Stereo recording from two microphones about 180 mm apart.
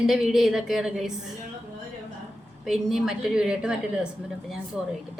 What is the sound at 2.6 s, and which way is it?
A woman's voice, 5° right (ahead or behind).